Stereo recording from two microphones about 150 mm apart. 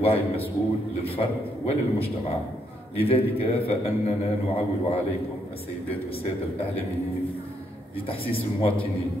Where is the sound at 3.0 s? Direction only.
40° left (ahead or behind).